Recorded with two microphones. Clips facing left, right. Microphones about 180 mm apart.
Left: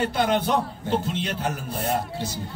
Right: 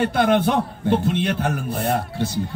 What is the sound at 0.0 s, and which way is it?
A man's voice, 55° right (ahead or behind).